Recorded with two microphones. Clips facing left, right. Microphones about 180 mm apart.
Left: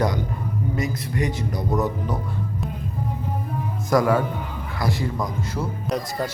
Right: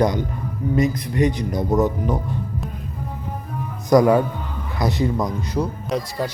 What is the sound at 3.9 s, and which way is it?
Speech, 20° right (ahead or behind).